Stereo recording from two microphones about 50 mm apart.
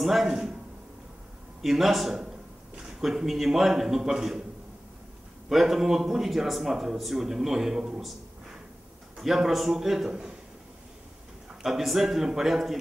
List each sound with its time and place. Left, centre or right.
0.0 s a man's voice: centre
1.6 s a man's voice: centre
5.5 s a man's voice: centre
9.1 s a man's voice: centre
11.6 s a man's voice: centre